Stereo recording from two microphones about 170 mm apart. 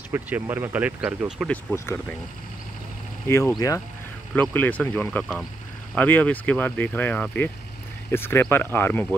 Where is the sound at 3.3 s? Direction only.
15° left (ahead or behind).